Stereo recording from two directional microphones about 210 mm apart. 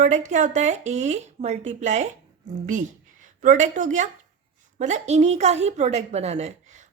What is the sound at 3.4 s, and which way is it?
A woman's voice, 35° right (ahead or behind).